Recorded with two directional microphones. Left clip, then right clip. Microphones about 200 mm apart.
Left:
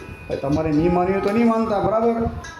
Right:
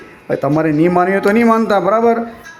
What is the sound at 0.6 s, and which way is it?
A man's voice, 20° right (ahead or behind).